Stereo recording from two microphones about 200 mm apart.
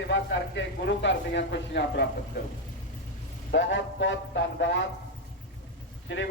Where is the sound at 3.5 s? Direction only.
65° left (ahead or behind).